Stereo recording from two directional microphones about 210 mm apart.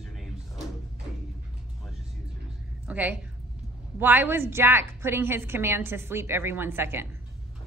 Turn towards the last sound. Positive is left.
turn(degrees=-10)  # may be behind; listen again after turning